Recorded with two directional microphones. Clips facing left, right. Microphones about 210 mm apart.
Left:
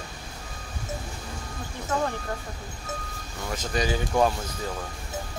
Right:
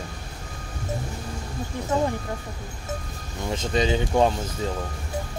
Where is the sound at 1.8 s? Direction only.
15° right (ahead or behind).